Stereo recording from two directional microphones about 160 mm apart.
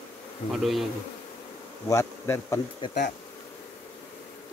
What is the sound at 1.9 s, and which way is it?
Bee, 20° left (ahead or behind).